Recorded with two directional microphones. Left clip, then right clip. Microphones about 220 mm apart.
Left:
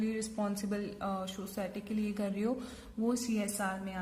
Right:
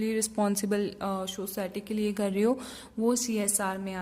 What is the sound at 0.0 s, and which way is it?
A woman's voice, 45° right (ahead or behind).